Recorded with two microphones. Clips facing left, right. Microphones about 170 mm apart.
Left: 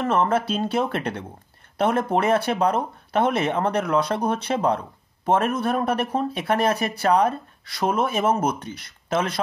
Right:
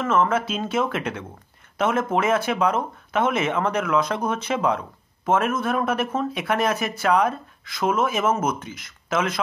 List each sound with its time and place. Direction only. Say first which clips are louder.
0.0 s speech: even; 35° left (ahead or behind)